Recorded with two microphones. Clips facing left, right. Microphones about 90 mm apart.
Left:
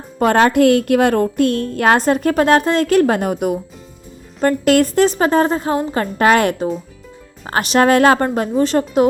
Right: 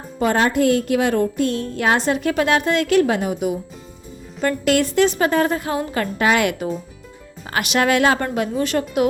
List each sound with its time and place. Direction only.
0.2 s a woman's voice: 65° left (ahead or behind); by 9.0 s 35° left (ahead or behind)